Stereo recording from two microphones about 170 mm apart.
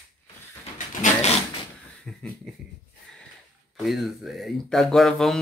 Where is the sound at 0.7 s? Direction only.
45° left (ahead or behind).